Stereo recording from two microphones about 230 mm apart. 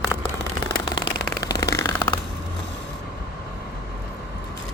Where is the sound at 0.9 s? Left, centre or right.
Centre.